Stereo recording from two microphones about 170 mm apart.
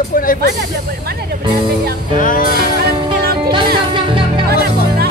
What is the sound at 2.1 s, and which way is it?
Speech, 55° left (ahead or behind).